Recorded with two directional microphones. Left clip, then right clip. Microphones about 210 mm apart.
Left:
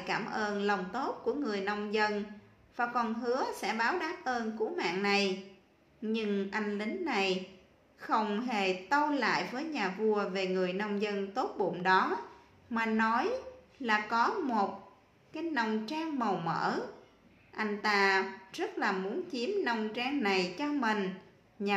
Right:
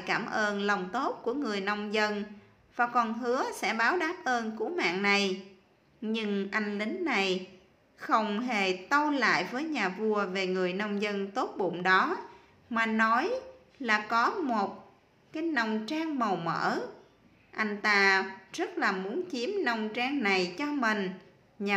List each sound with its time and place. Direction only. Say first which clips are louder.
0.0 s a woman's voice: right 4 dB; 20° right (ahead or behind)